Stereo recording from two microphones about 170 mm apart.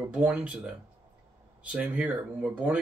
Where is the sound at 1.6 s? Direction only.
10° right (ahead or behind).